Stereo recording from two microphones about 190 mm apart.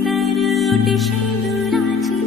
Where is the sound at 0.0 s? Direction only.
Centre (ahead or behind).